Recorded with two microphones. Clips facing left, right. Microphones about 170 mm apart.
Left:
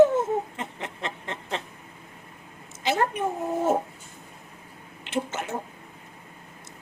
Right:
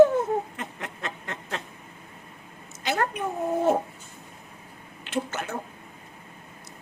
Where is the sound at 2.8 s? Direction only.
25° left (ahead or behind).